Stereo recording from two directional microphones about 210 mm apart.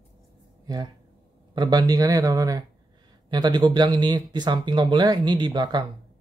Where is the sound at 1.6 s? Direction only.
20° right (ahead or behind).